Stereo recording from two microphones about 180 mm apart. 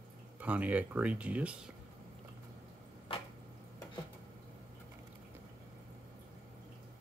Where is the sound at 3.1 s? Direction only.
30° left (ahead or behind).